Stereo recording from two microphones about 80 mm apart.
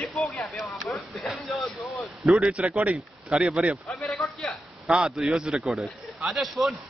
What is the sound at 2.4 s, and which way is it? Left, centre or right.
Speech, centre.